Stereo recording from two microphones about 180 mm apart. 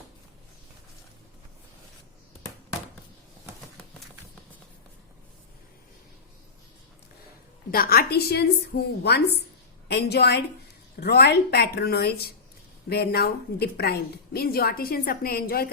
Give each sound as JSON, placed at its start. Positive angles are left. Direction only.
{"t": 7.7, "sound": "a woman's voice", "side_deg": 55}